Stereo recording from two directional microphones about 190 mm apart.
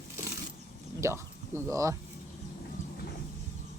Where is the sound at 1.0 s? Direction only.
15° right (ahead or behind).